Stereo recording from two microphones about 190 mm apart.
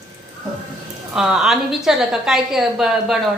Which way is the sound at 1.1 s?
5° right (ahead or behind).